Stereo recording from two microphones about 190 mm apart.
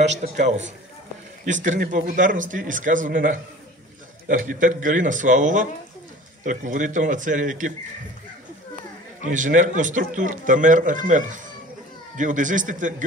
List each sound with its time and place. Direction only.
0.2 s a man's voice: 40° right (ahead or behind)
9.3 s a man's voice: 40° right (ahead or behind)